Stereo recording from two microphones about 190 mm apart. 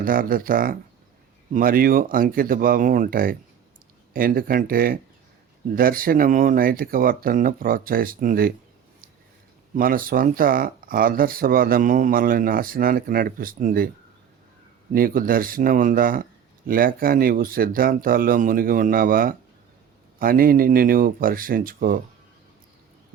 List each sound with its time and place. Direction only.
0.0 s speech: 50° right (ahead or behind)
9.7 s speech: 50° right (ahead or behind)
14.9 s speech: 50° right (ahead or behind)